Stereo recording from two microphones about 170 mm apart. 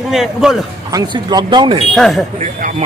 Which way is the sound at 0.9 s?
25° right (ahead or behind).